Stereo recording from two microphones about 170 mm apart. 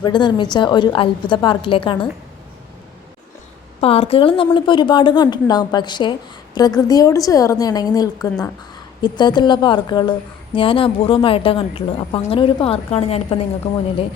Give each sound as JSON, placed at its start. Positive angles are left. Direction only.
{"t": 0.0, "sound": "a woman's voice", "side_deg": 25}
{"t": 3.8, "sound": "a woman's voice", "side_deg": 35}